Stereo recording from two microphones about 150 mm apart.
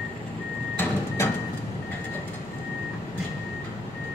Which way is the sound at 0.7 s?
15° left (ahead or behind).